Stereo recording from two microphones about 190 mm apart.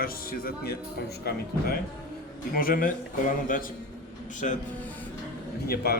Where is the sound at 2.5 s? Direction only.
50° left (ahead or behind).